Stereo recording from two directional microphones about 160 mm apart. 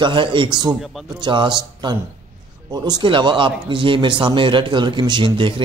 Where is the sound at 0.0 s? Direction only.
30° right (ahead or behind).